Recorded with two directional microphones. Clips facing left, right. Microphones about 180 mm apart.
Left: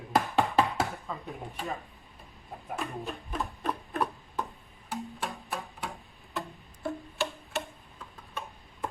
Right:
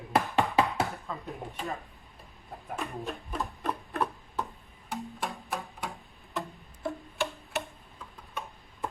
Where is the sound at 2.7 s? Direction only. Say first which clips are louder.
Even; centre (ahead or behind).